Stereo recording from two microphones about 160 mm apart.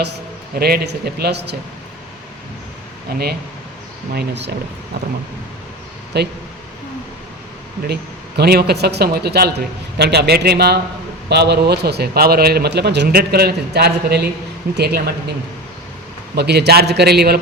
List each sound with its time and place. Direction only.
0.6 s speech: 80° right
3.1 s speech: 70° right (ahead or behind)
4.1 s a man's voice: 90° right
6.1 s a man's voice: 90° right
8.4 s a man's voice: 80° right